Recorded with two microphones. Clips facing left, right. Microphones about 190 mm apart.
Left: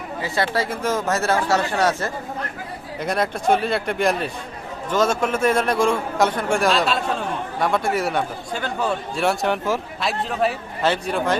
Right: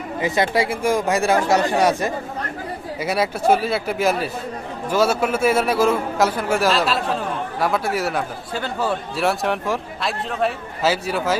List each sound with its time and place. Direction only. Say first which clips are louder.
0.2 s a man's voice: right 4 dB; 20° right (ahead or behind)